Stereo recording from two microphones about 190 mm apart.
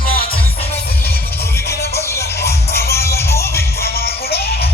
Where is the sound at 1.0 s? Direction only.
55° left (ahead or behind).